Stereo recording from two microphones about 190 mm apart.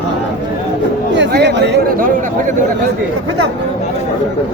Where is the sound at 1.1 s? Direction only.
65° right (ahead or behind).